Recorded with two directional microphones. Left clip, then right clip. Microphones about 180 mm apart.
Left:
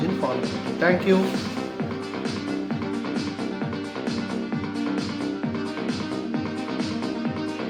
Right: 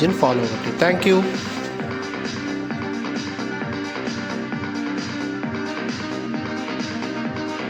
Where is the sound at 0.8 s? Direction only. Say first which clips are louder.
Right 3 dB; 60° right (ahead or behind).